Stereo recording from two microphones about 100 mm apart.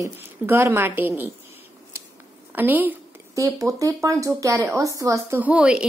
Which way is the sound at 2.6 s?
20° right (ahead or behind).